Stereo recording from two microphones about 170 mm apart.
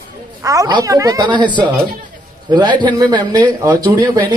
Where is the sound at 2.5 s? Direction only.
25° right (ahead or behind).